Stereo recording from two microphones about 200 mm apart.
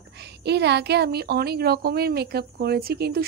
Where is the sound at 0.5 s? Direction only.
55° right (ahead or behind).